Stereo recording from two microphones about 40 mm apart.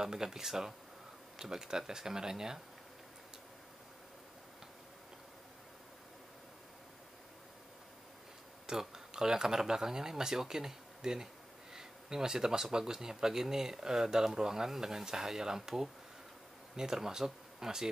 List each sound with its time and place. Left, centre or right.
0.0 s speech: centre
8.6 s speech: centre
11.7 s a sound: centre
12.7 s speech: centre